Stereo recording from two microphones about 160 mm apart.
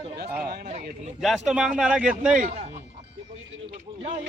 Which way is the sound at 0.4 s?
70° right (ahead or behind).